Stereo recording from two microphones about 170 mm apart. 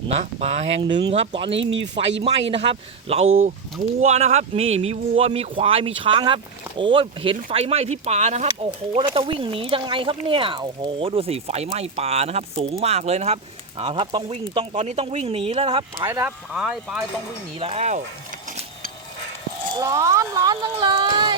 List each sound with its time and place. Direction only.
0.2 s speech: 40° right (ahead or behind)
0.8 s speech: 25° right (ahead or behind)
9.0 s speech: 30° right (ahead or behind)
16.0 s speech: 15° right (ahead or behind)
17.6 s speech: 40° right (ahead or behind)
19.7 s speech: 20° right (ahead or behind)